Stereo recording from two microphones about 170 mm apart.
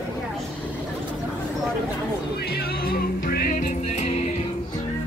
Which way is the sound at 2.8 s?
65° left (ahead or behind).